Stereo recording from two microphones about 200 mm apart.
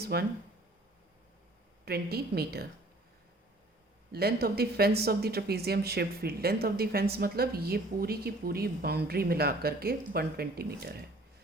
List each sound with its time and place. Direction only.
0.0 s speech: 50° right (ahead or behind)
1.8 s speech: 50° right (ahead or behind)
4.1 s speech: 50° right (ahead or behind)